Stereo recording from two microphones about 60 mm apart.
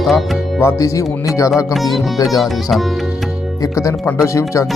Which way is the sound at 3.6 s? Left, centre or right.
Left.